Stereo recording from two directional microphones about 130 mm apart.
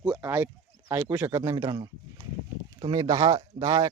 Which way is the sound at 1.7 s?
40° right (ahead or behind).